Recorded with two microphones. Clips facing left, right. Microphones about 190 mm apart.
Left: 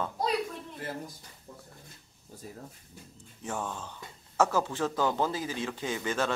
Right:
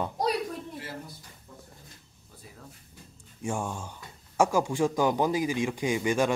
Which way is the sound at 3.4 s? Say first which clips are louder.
Right 3 dB; 10° right (ahead or behind).